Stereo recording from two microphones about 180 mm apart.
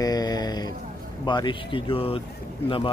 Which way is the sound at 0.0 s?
20° left (ahead or behind).